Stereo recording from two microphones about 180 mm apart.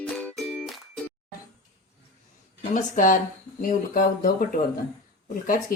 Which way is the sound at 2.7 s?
45° left (ahead or behind).